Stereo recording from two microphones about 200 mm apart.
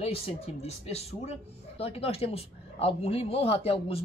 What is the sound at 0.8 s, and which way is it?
Speech, 30° left (ahead or behind).